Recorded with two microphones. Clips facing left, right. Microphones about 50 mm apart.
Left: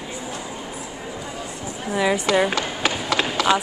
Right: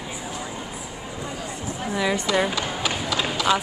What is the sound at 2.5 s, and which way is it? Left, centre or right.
Run, left.